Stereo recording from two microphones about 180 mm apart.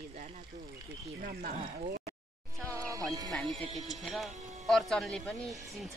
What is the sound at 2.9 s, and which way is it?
Speech, 20° right (ahead or behind).